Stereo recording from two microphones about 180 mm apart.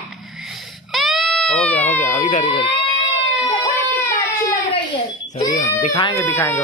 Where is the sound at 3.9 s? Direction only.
15° left (ahead or behind).